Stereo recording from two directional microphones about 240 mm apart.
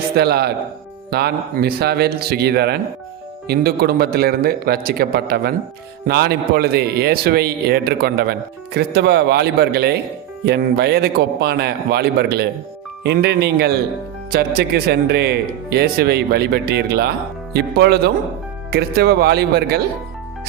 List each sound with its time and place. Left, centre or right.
0.2 s a man's voice: right